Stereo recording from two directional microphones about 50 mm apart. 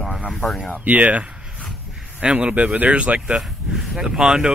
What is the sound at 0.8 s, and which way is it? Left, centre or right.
Speech, right.